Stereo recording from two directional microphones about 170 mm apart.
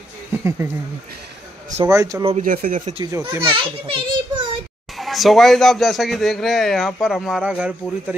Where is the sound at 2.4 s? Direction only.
55° right (ahead or behind).